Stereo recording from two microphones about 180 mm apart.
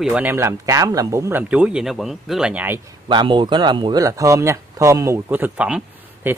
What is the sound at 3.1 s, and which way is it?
Speech, 25° right (ahead or behind).